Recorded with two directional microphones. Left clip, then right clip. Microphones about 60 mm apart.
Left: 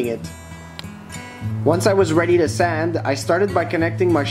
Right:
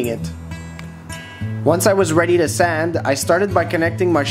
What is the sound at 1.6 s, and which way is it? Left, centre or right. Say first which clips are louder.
Speech: right 2 dB; right.